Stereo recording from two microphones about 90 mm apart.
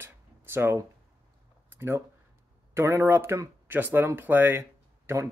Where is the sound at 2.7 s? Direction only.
30° right (ahead or behind).